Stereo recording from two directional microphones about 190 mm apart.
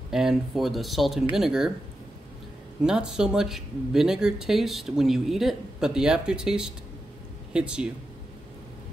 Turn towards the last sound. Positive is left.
turn(degrees=-5)  # may be behind; listen again after turning